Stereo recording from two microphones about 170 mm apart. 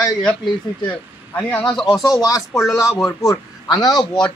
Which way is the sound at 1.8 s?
20° left (ahead or behind).